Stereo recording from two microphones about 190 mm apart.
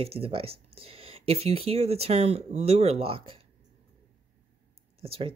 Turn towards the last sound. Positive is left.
turn(degrees=-30)  # may be behind; listen again after turning